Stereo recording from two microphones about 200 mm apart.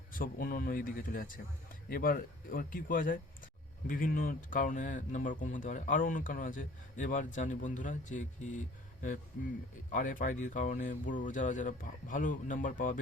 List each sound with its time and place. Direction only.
0.1 s a man's voice: 45° left (ahead or behind)